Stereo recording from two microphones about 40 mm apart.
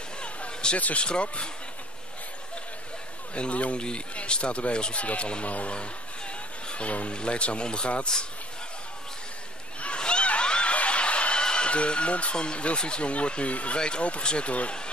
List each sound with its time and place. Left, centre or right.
0.2 s a sound: left
0.7 s speech: left
1.0 s speech: left
3.3 s speech: left
9.8 s snicker: left
11.4 s speech: left